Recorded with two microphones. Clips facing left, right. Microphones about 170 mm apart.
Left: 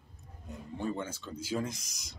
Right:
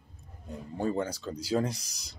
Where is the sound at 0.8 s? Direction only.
35° right (ahead or behind).